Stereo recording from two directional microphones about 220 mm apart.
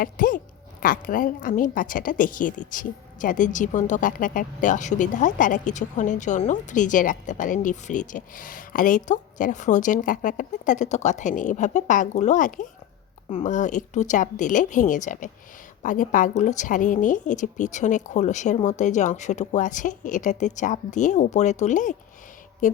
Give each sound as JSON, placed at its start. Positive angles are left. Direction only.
{"t": 0.0, "sound": "a woman's voice", "side_deg": 40}